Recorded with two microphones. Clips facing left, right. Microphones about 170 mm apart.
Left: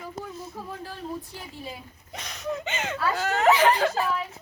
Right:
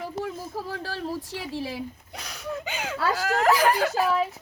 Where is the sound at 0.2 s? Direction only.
90° right.